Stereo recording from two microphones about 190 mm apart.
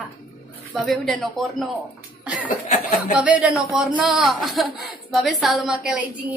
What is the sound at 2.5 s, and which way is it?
Speech, 40° left (ahead or behind).